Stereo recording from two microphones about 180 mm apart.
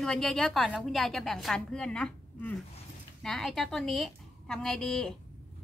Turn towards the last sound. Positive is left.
turn(degrees=5)  # may be behind; listen again after turning